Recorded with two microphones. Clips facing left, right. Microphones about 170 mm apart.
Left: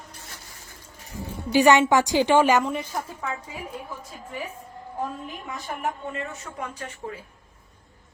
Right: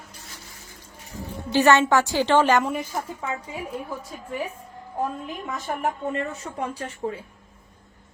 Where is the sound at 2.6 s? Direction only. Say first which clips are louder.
Right 1 dB; 5° right (ahead or behind).